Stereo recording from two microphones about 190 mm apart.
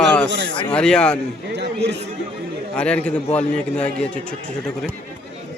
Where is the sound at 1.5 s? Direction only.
60° right (ahead or behind).